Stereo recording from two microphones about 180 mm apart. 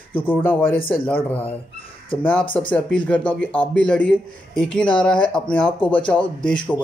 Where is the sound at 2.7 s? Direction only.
5° left (ahead or behind).